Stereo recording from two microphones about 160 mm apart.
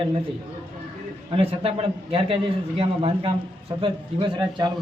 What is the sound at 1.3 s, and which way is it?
A man's voice, 35° right (ahead or behind).